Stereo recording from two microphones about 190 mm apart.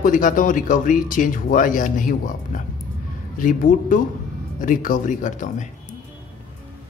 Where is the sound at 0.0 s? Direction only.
45° left (ahead or behind).